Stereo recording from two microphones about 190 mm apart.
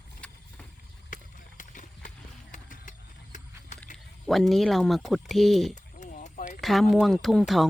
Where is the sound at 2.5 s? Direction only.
40° left (ahead or behind).